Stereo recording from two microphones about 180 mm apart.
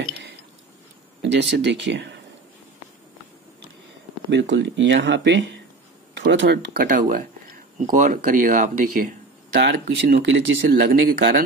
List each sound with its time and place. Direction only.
1.2 s speech: 80° right
4.3 s speech: 85° right; by 6.9 s 65° right (ahead or behind)
6.9 s speech: 50° right (ahead or behind); by 10.7 s 85° right
10.9 s speech: 55° right (ahead or behind)